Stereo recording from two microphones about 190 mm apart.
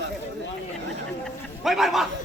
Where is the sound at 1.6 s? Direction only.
Centre (ahead or behind).